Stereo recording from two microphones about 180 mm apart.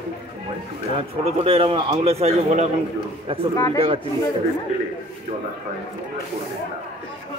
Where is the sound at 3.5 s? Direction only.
15° left (ahead or behind).